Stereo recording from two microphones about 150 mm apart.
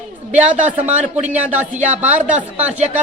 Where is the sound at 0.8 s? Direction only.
10° right (ahead or behind).